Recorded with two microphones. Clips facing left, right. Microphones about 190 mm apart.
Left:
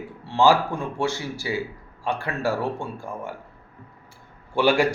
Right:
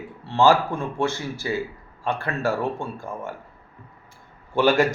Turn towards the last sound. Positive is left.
turn(degrees=15)  # may be behind; listen again after turning